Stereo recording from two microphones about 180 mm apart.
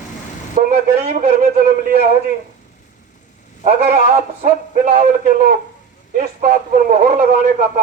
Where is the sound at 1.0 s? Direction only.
40° right (ahead or behind).